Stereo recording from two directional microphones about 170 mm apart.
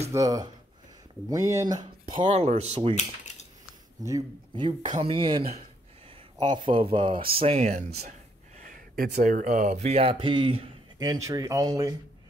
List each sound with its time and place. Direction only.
0.1 s speech: 20° right (ahead or behind); by 3.0 s 35° right (ahead or behind)
4.0 s speech: 20° right (ahead or behind)
4.6 s speech: 30° right (ahead or behind)
11.0 s speech: 20° right (ahead or behind)